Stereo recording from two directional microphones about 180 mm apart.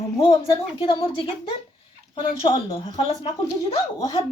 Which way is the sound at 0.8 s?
30° left (ahead or behind).